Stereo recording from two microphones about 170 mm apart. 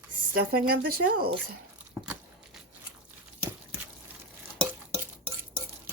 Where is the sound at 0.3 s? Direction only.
65° right (ahead or behind).